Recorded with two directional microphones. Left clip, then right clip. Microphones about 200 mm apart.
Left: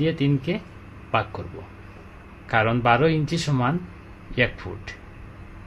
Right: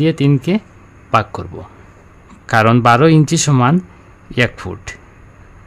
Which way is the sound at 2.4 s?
55° right (ahead or behind).